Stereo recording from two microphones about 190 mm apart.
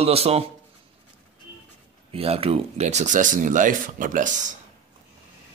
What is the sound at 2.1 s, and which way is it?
Speech, 30° right (ahead or behind).